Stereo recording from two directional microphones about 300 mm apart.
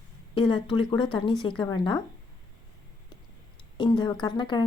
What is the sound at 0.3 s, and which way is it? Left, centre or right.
Speech, centre.